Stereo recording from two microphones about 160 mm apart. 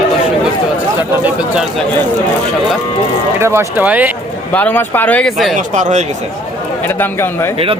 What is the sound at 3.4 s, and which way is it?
Speech, 15° right (ahead or behind).